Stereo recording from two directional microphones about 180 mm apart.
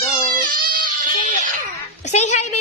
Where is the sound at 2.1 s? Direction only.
40° left (ahead or behind).